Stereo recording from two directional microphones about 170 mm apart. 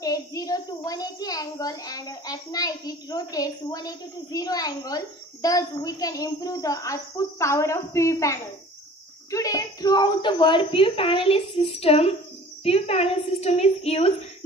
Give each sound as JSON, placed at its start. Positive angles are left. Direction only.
{"t": 0.0, "sound": "a child's voice", "side_deg": 20}